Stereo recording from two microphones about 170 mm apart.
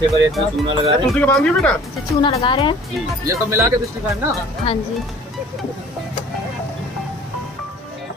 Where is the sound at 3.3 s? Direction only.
15° right (ahead or behind).